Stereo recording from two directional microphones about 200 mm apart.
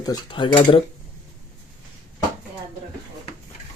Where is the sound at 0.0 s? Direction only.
20° left (ahead or behind).